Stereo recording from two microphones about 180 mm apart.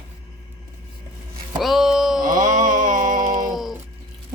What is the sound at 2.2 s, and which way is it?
Music, 50° right (ahead or behind).